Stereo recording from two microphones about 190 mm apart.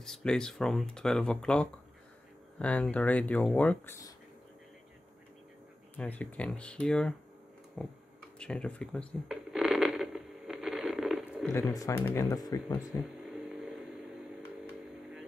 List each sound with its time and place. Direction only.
0.0 s speech: 5° left (ahead or behind)
5.9 s speech: 5° left (ahead or behind)
8.4 s a sound: 5° left (ahead or behind)
11.5 s speech: 15° left (ahead or behind)
13.2 s vehicle: centre (ahead or behind)